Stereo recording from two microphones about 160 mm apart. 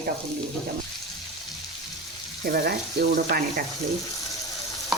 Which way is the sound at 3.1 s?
60° right (ahead or behind).